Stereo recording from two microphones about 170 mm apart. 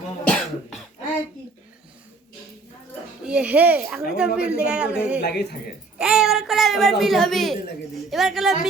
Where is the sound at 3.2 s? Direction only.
5° right (ahead or behind).